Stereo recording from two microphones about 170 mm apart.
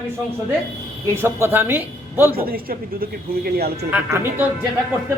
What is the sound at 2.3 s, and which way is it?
Speech, 60° right (ahead or behind).